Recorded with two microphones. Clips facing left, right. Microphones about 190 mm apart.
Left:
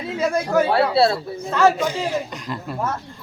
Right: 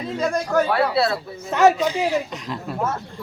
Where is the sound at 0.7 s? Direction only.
30° left (ahead or behind).